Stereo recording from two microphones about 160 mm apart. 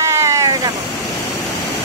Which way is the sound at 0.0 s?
20° right (ahead or behind).